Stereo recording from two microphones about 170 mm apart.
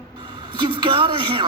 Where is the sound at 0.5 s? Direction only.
25° right (ahead or behind).